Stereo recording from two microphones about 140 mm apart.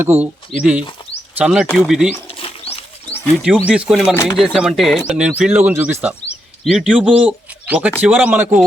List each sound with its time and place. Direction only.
0.0 s speech: 15° right (ahead or behind)
2.4 s wild animals: 45° left (ahead or behind)
3.3 s speech: 5° right (ahead or behind)
4.1 s speech: 20° left (ahead or behind)
4.4 s speech: 5° right (ahead or behind)